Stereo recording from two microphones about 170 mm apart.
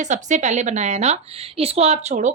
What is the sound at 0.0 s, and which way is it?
A woman's voice, 45° right (ahead or behind).